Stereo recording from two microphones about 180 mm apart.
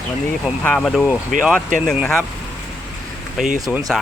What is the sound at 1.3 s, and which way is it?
Speech, 50° right (ahead or behind).